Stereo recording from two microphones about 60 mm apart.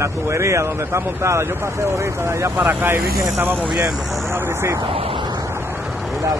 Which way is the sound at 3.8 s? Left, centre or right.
Right.